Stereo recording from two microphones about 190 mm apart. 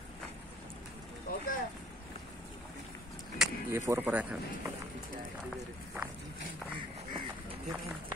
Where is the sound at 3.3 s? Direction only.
5° right (ahead or behind).